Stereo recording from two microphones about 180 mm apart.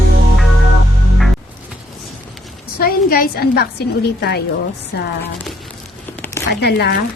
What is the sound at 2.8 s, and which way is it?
A woman's voice, 55° left (ahead or behind).